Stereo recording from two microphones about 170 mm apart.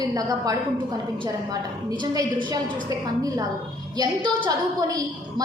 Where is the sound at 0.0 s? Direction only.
20° right (ahead or behind).